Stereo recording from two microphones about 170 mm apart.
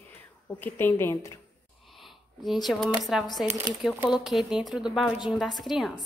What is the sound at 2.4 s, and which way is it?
A woman's voice, centre (ahead or behind).